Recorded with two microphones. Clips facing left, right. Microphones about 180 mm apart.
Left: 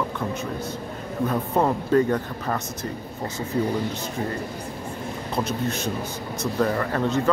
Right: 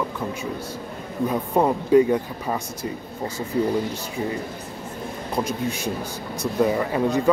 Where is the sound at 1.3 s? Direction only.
10° right (ahead or behind).